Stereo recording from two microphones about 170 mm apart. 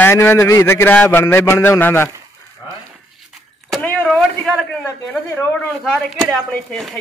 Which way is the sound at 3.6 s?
Centre (ahead or behind).